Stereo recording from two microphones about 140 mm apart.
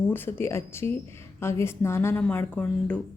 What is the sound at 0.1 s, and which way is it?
A woman's voice, 15° left (ahead or behind).